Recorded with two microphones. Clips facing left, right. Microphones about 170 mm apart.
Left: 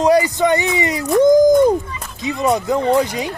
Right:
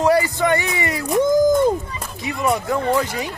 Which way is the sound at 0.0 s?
15° left (ahead or behind).